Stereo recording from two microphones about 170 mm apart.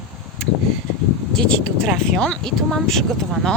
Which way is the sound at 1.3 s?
5° left (ahead or behind).